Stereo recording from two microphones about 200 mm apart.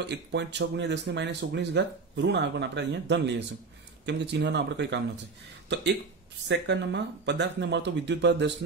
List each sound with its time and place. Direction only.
0.0 s speech: 60° right (ahead or behind)